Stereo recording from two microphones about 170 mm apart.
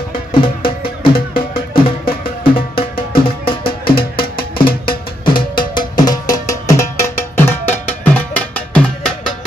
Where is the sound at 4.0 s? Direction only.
60° left (ahead or behind).